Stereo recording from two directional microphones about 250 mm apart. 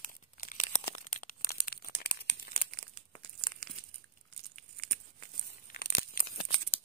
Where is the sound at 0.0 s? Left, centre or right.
Left.